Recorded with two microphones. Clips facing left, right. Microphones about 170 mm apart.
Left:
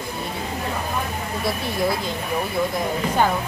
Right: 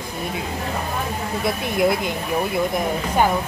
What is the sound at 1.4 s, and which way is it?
Speech, 20° right (ahead or behind).